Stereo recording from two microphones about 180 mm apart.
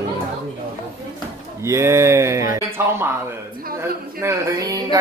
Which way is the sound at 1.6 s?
15° right (ahead or behind).